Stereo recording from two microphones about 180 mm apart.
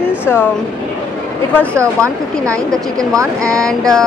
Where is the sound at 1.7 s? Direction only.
15° right (ahead or behind).